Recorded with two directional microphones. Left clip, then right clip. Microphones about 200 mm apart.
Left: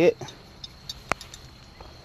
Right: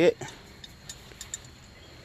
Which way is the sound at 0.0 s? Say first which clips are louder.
Left 2 dB; 10° left (ahead or behind).